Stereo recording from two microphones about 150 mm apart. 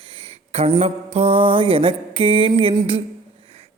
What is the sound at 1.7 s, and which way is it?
A man's voice, 35° right (ahead or behind).